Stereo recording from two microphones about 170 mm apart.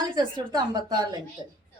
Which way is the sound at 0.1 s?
25° right (ahead or behind).